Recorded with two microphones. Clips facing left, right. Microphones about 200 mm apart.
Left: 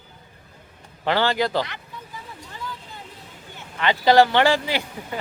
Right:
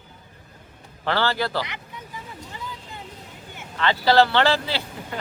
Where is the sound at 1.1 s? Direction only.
15° left (ahead or behind).